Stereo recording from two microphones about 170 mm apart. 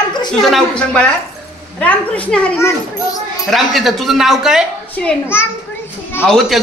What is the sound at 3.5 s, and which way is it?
A woman's voice, centre (ahead or behind).